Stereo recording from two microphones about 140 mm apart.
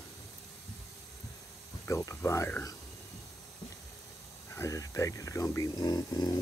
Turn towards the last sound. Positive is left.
turn(degrees=30)  # may be behind; listen again after turning